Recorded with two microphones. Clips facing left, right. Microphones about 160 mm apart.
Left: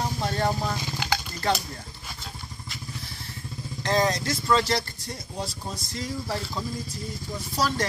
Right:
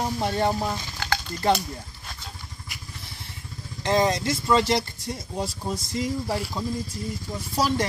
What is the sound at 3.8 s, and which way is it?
Speech, 20° right (ahead or behind).